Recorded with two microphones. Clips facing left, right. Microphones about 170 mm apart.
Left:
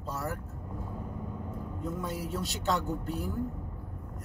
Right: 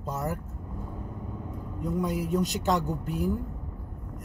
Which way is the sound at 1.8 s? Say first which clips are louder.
Right 7 dB; 15° right (ahead or behind).